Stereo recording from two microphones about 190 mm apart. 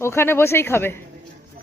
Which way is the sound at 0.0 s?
15° left (ahead or behind).